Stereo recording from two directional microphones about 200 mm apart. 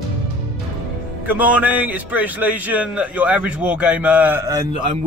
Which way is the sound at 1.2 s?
5° right (ahead or behind).